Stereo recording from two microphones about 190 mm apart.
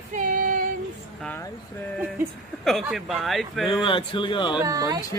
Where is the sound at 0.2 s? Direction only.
45° right (ahead or behind).